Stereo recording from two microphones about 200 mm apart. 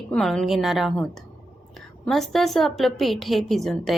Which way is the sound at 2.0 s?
Centre (ahead or behind).